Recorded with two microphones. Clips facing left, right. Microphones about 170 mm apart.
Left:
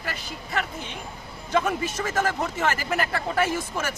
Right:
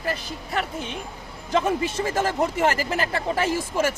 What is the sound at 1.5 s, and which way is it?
Speech, 30° right (ahead or behind).